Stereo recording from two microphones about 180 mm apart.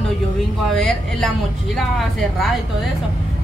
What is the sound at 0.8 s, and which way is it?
Speech, 5° left (ahead or behind).